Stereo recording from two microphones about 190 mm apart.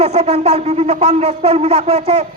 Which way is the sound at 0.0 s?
35° right (ahead or behind).